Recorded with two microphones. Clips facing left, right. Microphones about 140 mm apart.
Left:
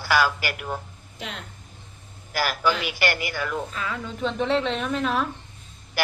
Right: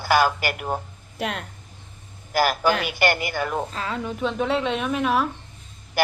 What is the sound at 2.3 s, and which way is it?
A woman's voice, 45° right (ahead or behind).